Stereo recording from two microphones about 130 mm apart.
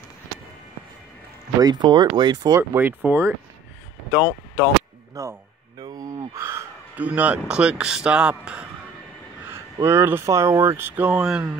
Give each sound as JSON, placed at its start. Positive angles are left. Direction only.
{"t": 1.6, "sound": "speech", "side_deg": -35}
{"t": 2.7, "sound": "speech", "side_deg": -15}
{"t": 5.1, "sound": "crow", "side_deg": -25}
{"t": 7.1, "sound": "speech", "side_deg": -10}
{"t": 9.5, "sound": "speech", "side_deg": -20}